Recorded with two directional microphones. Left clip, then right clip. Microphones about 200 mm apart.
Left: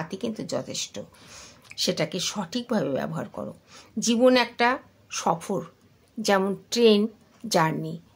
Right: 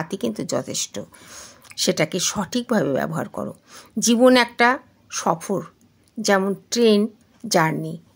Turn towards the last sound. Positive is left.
turn(degrees=-25)  # may be behind; listen again after turning